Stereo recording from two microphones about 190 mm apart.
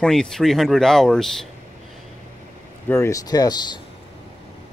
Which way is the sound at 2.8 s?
15° left (ahead or behind).